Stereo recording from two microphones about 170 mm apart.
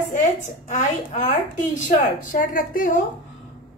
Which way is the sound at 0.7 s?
45° left (ahead or behind).